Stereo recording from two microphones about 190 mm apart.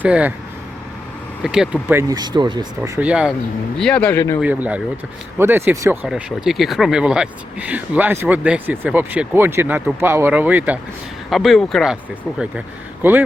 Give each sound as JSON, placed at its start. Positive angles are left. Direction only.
{"t": 0.0, "sound": "speech", "side_deg": -10}
{"t": 1.5, "sound": "speech", "side_deg": -5}
{"t": 3.1, "sound": "speech", "side_deg": -5}
{"t": 4.4, "sound": "a man's voice", "side_deg": -5}